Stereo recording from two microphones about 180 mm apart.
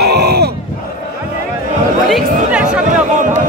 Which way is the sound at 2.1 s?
5° right (ahead or behind).